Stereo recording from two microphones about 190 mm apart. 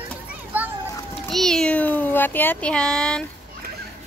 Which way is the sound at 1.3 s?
Centre (ahead or behind).